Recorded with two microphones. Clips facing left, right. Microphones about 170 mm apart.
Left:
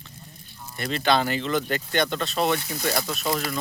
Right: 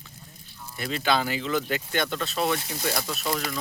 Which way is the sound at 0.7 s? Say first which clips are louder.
Left 3 dB; 5° right (ahead or behind).